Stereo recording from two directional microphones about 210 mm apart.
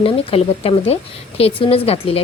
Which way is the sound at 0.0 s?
25° left (ahead or behind).